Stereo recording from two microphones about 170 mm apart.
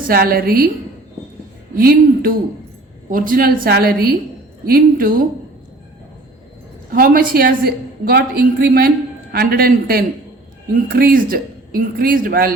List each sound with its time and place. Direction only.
0.1 s a woman's voice: 60° right (ahead or behind)
1.7 s a woman's voice: 60° right (ahead or behind)
6.9 s a woman's voice: 55° right (ahead or behind)